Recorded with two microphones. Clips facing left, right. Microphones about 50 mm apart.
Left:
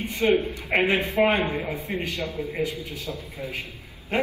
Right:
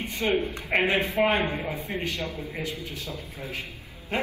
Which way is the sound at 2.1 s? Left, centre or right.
Left.